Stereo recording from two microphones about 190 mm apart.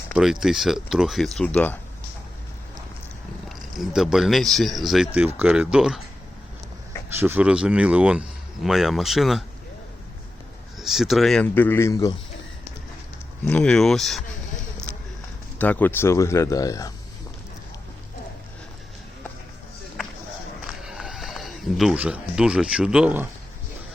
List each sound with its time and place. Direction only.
0.2 s speech: centre (ahead or behind)
3.5 s speech: centre (ahead or behind)
7.1 s speech: 10° right (ahead or behind)
10.8 s speech: centre (ahead or behind); by 12.1 s 15° left (ahead or behind)
13.4 s speech: 5° left (ahead or behind)
14.9 s a sound: 10° left (ahead or behind)
15.5 s speech: 10° left (ahead or behind)
20.8 s speech: centre (ahead or behind)